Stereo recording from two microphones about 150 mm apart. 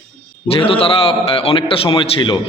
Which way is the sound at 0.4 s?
40° left (ahead or behind).